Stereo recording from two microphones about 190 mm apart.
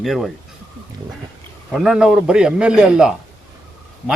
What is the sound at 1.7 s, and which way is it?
A man's voice, 5° right (ahead or behind).